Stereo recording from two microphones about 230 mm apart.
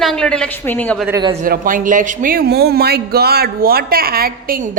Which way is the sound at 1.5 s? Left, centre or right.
Right.